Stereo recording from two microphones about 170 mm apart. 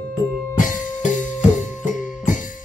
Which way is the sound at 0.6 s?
50° left (ahead or behind).